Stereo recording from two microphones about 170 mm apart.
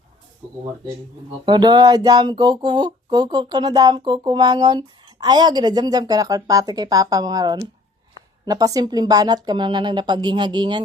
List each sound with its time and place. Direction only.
1.5 s speech: 25° right (ahead or behind)